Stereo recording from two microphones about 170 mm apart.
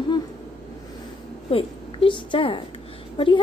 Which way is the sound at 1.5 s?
30° left (ahead or behind).